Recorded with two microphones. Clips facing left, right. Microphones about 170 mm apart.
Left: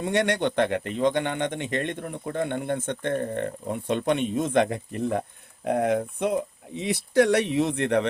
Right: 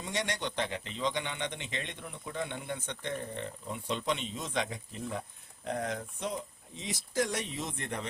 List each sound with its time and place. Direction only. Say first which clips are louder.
0.0 s speech: left 11 dB; 60° left (ahead or behind)